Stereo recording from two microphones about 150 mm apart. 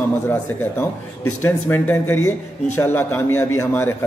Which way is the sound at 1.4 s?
15° left (ahead or behind).